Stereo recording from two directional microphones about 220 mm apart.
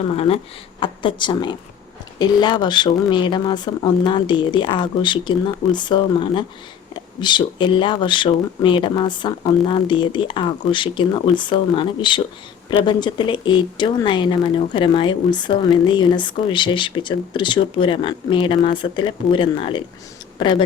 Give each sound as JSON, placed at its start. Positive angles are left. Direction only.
{"t": 0.1, "sound": "speech", "side_deg": 25}